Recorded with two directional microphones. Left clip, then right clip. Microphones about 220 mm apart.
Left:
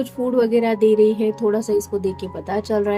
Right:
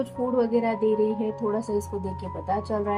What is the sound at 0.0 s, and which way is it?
Speech, 40° left (ahead or behind).